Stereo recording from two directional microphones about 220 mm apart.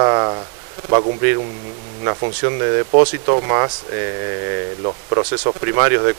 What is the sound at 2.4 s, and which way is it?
Speech, 20° right (ahead or behind).